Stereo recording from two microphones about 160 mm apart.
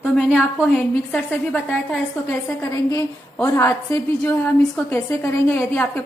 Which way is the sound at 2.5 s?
20° left (ahead or behind).